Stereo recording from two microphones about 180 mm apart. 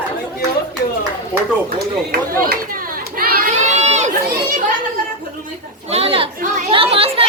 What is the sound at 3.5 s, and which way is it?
Crowd, 40° right (ahead or behind).